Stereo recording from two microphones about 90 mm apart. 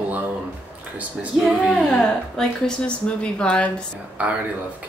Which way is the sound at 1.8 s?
10° left (ahead or behind).